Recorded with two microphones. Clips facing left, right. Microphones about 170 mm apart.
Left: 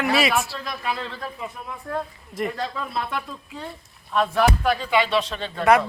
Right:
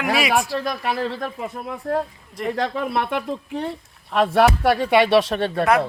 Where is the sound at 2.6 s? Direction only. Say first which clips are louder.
Right 6 dB; 70° right (ahead or behind).